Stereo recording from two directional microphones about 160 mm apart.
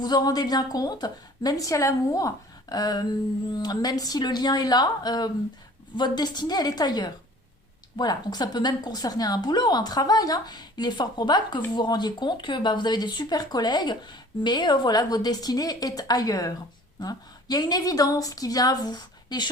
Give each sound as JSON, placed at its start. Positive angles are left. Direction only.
{"t": 0.0, "sound": "speech", "side_deg": 25}